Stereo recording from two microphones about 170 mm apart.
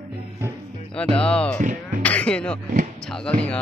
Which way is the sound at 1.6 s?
50° right (ahead or behind).